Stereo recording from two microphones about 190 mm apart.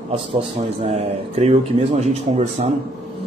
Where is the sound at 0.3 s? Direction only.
35° right (ahead or behind).